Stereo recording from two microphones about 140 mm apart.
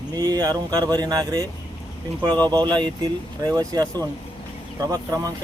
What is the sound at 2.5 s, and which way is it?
Speech, 30° right (ahead or behind).